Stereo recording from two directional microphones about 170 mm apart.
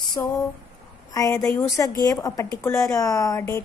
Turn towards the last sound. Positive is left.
turn(degrees=20)  # may be behind; listen again after turning